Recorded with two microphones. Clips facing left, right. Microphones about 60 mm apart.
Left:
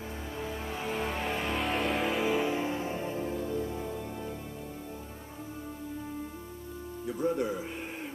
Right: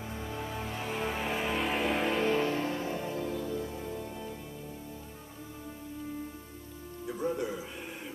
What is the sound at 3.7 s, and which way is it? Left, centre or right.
Music, centre.